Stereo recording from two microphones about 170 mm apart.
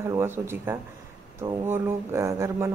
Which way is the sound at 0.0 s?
15° right (ahead or behind).